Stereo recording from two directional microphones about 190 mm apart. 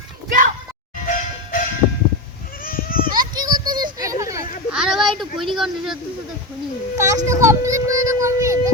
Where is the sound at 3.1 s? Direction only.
20° right (ahead or behind).